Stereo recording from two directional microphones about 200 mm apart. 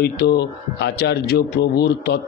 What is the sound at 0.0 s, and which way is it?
A man's voice, 55° left (ahead or behind).